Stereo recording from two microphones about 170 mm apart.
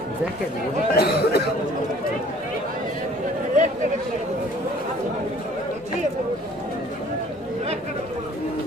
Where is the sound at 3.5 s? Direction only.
45° right (ahead or behind).